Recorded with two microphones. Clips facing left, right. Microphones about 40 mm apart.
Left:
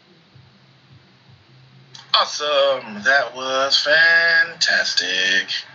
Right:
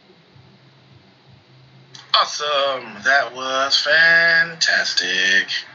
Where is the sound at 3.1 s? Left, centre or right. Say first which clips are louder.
Even; right.